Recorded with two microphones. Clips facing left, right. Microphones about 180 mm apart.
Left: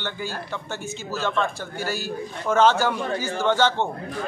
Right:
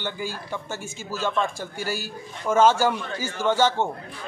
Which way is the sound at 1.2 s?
10° right (ahead or behind).